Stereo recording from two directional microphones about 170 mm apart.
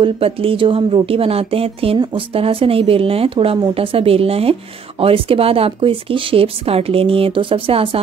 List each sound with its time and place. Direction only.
0.0 s speech: 35° right (ahead or behind)